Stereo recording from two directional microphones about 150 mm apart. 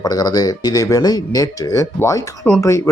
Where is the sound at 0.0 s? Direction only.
25° left (ahead or behind).